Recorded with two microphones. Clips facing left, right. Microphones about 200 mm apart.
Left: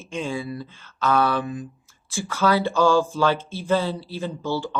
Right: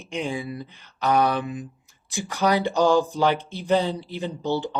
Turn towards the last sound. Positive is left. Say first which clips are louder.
# right 1 dB
turn(degrees=-20)  # may be behind; listen again after turning